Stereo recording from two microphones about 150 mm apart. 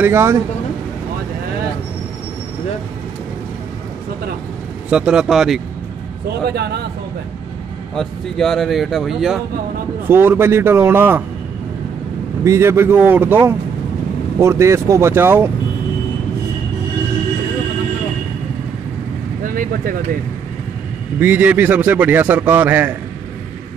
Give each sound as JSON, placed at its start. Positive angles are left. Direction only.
{"t": 0.0, "sound": "a man's voice", "side_deg": -15}
{"t": 4.8, "sound": "speech", "side_deg": -5}
{"t": 6.4, "sound": "speech", "side_deg": -90}
{"t": 7.9, "sound": "speech", "side_deg": 0}
{"t": 10.0, "sound": "a man's voice", "side_deg": -15}
{"t": 12.4, "sound": "a man's voice", "side_deg": -15}
{"t": 19.4, "sound": "vehicle", "side_deg": -70}
{"t": 21.2, "sound": "a man's voice", "side_deg": -10}